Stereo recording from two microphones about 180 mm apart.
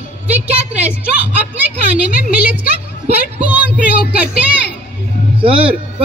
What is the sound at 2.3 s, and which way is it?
Speech, 10° right (ahead or behind).